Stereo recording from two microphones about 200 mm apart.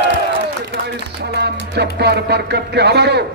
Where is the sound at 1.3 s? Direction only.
55° right (ahead or behind).